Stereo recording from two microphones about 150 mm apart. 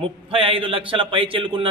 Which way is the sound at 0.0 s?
35° right (ahead or behind).